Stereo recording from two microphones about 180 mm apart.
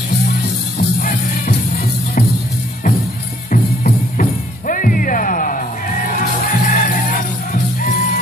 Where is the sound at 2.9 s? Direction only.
50° left (ahead or behind).